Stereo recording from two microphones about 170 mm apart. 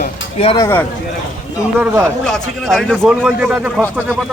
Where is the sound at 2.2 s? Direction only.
5° left (ahead or behind).